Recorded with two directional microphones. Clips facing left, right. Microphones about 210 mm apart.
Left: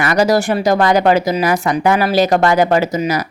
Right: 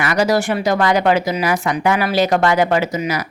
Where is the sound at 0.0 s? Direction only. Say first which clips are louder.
Left 3 dB; 40° left (ahead or behind).